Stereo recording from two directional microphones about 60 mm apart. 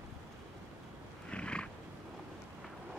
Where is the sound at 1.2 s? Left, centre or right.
Centre.